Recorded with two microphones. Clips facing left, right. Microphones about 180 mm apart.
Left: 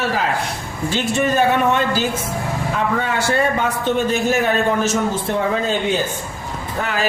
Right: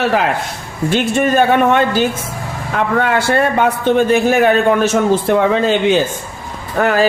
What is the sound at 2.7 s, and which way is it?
A man's voice, 65° right (ahead or behind).